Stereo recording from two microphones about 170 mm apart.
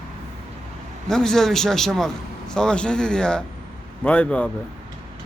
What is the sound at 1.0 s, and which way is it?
A man's voice, 5° left (ahead or behind).